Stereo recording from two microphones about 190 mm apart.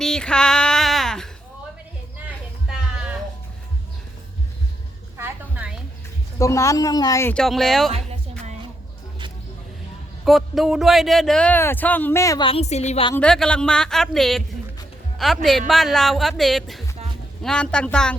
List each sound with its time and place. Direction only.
0.0 s female singing: 5° left (ahead or behind)
5.1 s a sound: 10° right (ahead or behind)
6.4 s speech: 15° left (ahead or behind)
7.9 s music: 30° right (ahead or behind)
10.2 s speech: centre (ahead or behind); by 12.5 s 15° left (ahead or behind)
12.5 s a woman's voice: 35° left (ahead or behind)
13.1 s speech: 5° left (ahead or behind)
15.4 s speech: centre (ahead or behind)